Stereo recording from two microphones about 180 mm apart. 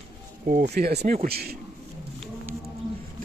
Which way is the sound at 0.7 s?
60° right (ahead or behind).